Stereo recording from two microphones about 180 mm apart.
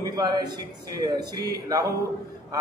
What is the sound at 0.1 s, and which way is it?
A man's voice, 20° right (ahead or behind).